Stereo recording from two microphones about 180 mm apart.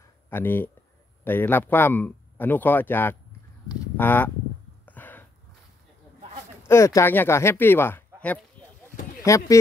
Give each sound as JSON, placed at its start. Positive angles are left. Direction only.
{"t": 0.3, "sound": "speech", "side_deg": 10}
{"t": 4.8, "sound": "a sound", "side_deg": 10}
{"t": 6.7, "sound": "speech", "side_deg": 15}